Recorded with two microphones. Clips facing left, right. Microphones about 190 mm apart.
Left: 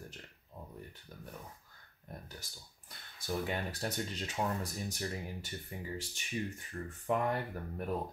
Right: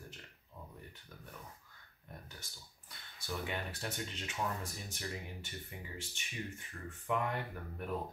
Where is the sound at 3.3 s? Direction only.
40° left (ahead or behind).